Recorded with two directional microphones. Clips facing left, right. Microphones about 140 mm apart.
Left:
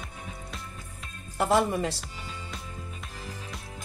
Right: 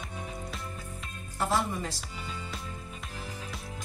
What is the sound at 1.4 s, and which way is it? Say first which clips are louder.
Speech: left 5 dB; 65° left (ahead or behind).